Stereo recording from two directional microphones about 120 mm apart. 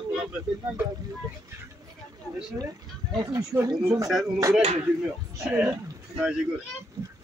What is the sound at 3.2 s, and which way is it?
Speech, 25° right (ahead or behind).